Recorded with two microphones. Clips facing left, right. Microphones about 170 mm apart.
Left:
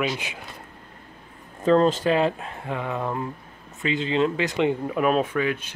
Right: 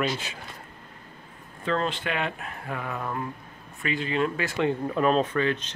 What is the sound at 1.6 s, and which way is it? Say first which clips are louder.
Speech: left 9 dB; 40° left (ahead or behind).